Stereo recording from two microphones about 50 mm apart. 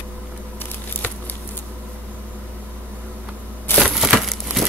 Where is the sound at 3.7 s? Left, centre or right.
Left.